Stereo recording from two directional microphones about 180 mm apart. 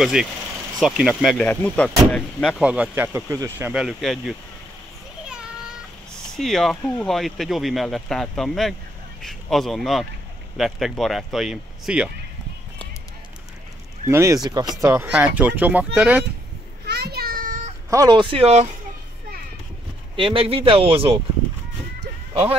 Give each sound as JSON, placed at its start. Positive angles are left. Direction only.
{"t": 0.0, "sound": "speech", "side_deg": -5}
{"t": 2.6, "sound": "speech", "side_deg": -5}
{"t": 6.3, "sound": "speech", "side_deg": 0}
{"t": 14.0, "sound": "speech", "side_deg": -15}
{"t": 16.8, "sound": "child singing", "side_deg": -60}
{"t": 17.8, "sound": "speech", "side_deg": -20}
{"t": 20.2, "sound": "speech", "side_deg": -30}
{"t": 22.3, "sound": "speech", "side_deg": -30}